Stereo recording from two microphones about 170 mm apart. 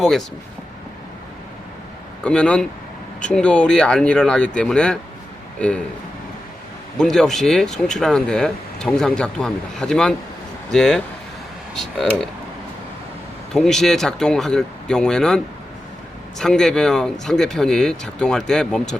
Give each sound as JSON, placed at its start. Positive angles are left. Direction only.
{"t": 0.0, "sound": "speech", "side_deg": 0}
{"t": 2.2, "sound": "speech", "side_deg": 5}
{"t": 7.0, "sound": "speech", "side_deg": 5}
{"t": 13.5, "sound": "speech", "side_deg": 0}
{"t": 16.4, "sound": "speech", "side_deg": 5}